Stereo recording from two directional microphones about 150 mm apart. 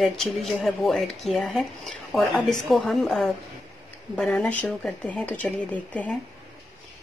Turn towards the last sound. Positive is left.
turn(degrees=10)  # may be behind; listen again after turning